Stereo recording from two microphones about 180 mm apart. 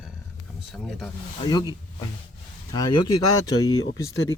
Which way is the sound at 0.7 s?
Centre (ahead or behind).